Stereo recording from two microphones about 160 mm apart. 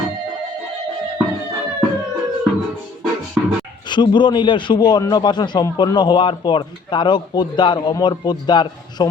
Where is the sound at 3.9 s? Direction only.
30° left (ahead or behind).